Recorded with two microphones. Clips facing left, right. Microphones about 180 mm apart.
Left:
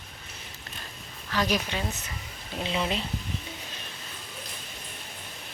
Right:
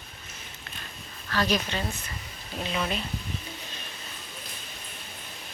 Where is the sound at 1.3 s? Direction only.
10° left (ahead or behind).